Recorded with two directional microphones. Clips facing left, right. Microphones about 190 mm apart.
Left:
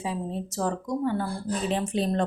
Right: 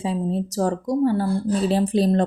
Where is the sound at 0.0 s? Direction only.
30° right (ahead or behind).